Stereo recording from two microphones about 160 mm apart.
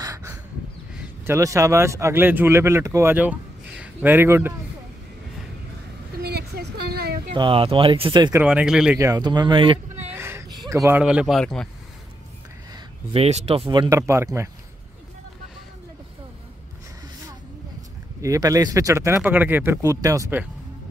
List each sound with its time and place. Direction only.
0.0 s a sound: 20° right (ahead or behind)
1.2 s speech: 20° right (ahead or behind)
6.2 s a sound: 90° right
7.3 s speech: 30° right (ahead or behind)
8.4 s speech: 5° right (ahead or behind)
8.9 s speech: 20° right (ahead or behind)
10.1 s speech: 15° right (ahead or behind); by 11.7 s 5° left (ahead or behind)
13.1 s speech: 40° right (ahead or behind); by 14.5 s 15° right (ahead or behind)
18.2 s speech: 20° right (ahead or behind)